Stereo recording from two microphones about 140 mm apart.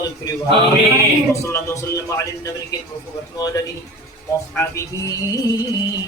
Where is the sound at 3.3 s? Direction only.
25° left (ahead or behind).